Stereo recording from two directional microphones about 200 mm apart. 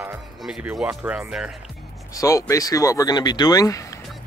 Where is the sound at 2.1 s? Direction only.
15° left (ahead or behind).